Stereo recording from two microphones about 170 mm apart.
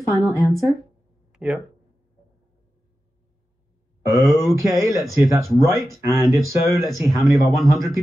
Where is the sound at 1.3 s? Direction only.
5° right (ahead or behind).